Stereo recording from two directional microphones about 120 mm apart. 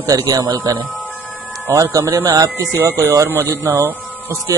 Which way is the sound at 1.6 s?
20° right (ahead or behind).